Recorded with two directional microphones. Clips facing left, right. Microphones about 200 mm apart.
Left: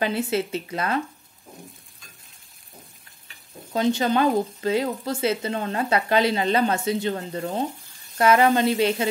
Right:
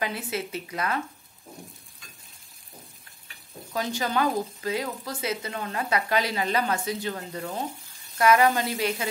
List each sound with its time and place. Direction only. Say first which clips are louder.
0.0 s speech: left 7 dB; 30° left (ahead or behind)
3.7 s speech: left 6 dB; 25° left (ahead or behind)